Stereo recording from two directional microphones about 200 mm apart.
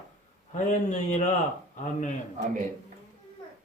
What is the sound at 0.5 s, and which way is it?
Speech, 35° left (ahead or behind).